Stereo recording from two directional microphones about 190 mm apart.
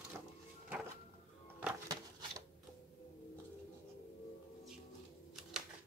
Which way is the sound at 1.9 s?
20° right (ahead or behind).